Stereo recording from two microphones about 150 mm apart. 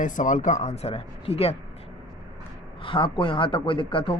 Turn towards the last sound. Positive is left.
turn(degrees=35)  # may be behind; listen again after turning